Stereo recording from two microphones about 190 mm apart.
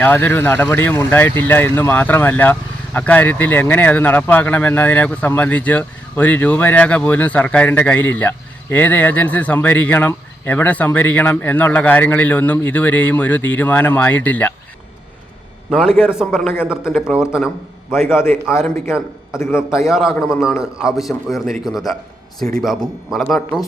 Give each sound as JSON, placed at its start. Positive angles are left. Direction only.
{"t": 0.0, "sound": "speech", "side_deg": 10}
{"t": 15.7, "sound": "a man's voice", "side_deg": 0}
{"t": 18.6, "sound": "a man's voice", "side_deg": -5}
{"t": 19.4, "sound": "speech", "side_deg": 15}
{"t": 19.9, "sound": "a man's voice", "side_deg": 0}